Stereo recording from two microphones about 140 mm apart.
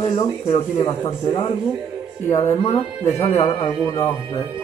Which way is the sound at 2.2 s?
20° left (ahead or behind).